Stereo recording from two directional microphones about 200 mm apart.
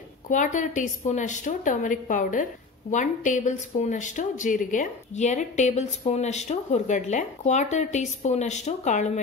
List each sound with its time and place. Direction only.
0.3 s speech: 40° left (ahead or behind)